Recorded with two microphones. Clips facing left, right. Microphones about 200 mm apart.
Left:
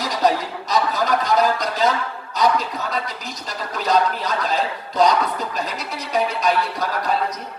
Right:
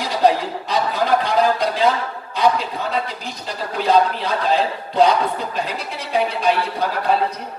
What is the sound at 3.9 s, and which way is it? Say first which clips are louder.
Speech: right 3 dB; 40° left (ahead or behind).